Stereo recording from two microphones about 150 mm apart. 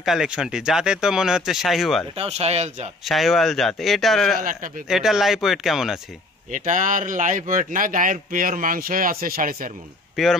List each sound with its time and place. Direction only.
0.0 s speech: 5° right (ahead or behind)
2.1 s speech: 45° right (ahead or behind)
3.1 s speech: centre (ahead or behind)
6.5 s speech: 60° right (ahead or behind)
10.1 s speech: centre (ahead or behind)